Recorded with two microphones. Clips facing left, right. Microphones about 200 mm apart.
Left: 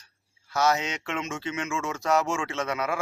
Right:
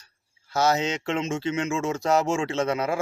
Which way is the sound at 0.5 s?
30° right (ahead or behind).